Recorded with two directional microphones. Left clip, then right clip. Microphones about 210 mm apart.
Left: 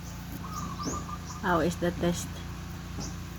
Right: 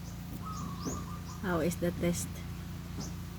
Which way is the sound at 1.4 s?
15° right (ahead or behind).